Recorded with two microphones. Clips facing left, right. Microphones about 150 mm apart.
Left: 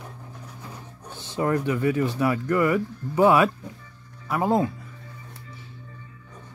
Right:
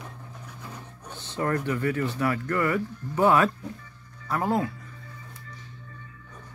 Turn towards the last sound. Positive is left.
turn(degrees=20)  # may be behind; listen again after turning